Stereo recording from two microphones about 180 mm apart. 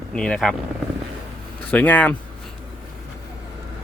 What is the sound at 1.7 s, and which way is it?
Speech, 10° left (ahead or behind).